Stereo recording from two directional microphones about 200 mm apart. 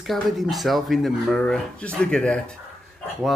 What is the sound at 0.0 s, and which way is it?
Speech, centre (ahead or behind).